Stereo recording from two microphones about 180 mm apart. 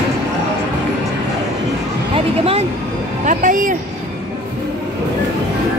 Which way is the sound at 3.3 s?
45° right (ahead or behind).